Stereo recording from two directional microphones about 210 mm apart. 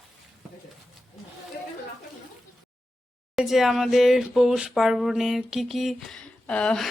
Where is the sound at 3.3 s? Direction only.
Centre (ahead or behind).